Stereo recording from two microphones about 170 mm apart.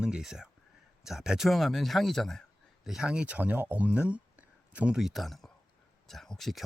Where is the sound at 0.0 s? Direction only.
5° right (ahead or behind).